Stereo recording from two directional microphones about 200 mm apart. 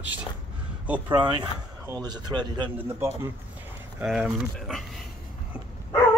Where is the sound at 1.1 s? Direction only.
20° right (ahead or behind).